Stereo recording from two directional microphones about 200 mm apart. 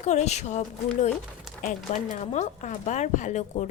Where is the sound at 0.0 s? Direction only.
35° left (ahead or behind).